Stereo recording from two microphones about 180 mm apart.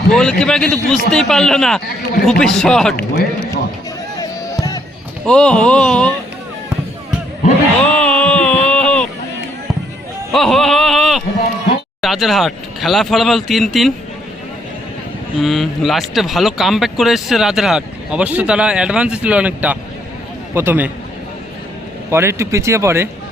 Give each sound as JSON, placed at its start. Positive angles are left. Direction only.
{"t": 0.1, "sound": "speech", "side_deg": 5}
{"t": 2.9, "sound": "a man's voice", "side_deg": 65}
{"t": 4.2, "sound": "music", "side_deg": 20}
{"t": 5.2, "sound": "speech", "side_deg": 5}
{"t": 7.9, "sound": "a sound", "side_deg": 5}
{"t": 10.3, "sound": "a sound", "side_deg": 0}
{"t": 12.0, "sound": "speech", "side_deg": 0}
{"t": 15.4, "sound": "speech", "side_deg": 0}
{"t": 22.1, "sound": "speech", "side_deg": -15}